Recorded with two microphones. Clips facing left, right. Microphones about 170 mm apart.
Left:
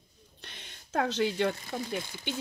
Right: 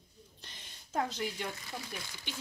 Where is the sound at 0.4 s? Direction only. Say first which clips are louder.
Left 8 dB; 65° left (ahead or behind).